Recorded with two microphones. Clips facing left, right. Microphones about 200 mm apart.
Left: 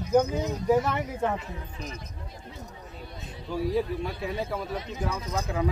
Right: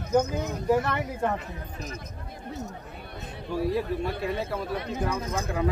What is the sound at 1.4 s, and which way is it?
Speech, 45° right (ahead or behind).